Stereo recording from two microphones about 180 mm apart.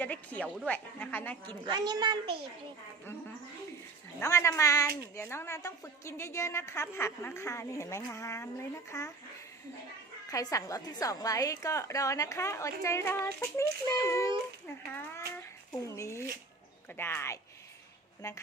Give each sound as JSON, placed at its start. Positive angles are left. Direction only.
{"t": 0.0, "sound": "a sound", "side_deg": 10}
{"t": 0.6, "sound": "a woman's voice", "side_deg": 5}
{"t": 1.6, "sound": "a child's voice", "side_deg": -25}
{"t": 4.2, "sound": "a woman's voice", "side_deg": 15}
{"t": 10.2, "sound": "a woman's voice", "side_deg": 20}